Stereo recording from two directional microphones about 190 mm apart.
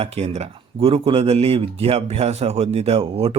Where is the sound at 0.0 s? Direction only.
30° right (ahead or behind).